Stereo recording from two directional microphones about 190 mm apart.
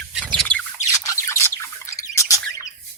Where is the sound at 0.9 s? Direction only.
15° left (ahead or behind).